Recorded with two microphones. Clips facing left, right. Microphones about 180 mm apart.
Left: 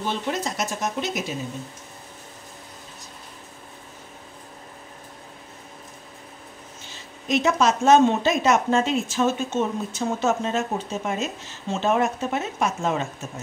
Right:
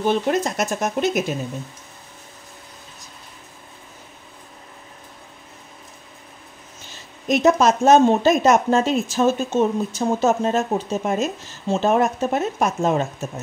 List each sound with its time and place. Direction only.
0.0 s speech: 50° right (ahead or behind)
7.2 s speech: 45° right (ahead or behind)